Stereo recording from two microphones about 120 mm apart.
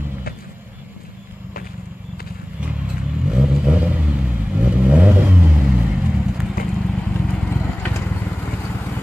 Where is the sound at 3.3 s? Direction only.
10° right (ahead or behind).